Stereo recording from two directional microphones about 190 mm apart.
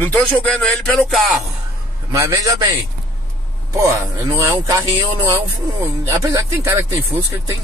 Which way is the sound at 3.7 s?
15° right (ahead or behind).